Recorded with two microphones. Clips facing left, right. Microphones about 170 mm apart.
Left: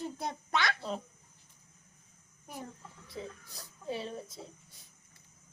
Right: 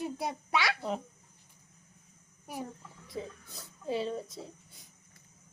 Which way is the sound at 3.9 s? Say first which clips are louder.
Right 5 dB; 25° right (ahead or behind).